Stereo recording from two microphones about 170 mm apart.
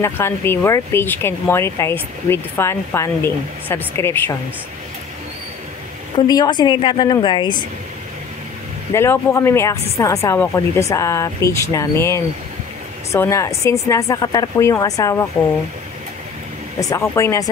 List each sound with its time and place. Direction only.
0.0 s speech: 15° left (ahead or behind)
6.1 s a woman's voice: 25° left (ahead or behind)
8.9 s a woman's voice: 15° left (ahead or behind)
16.9 s speech: 15° left (ahead or behind)